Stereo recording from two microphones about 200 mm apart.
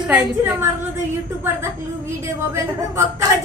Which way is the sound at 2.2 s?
15° right (ahead or behind).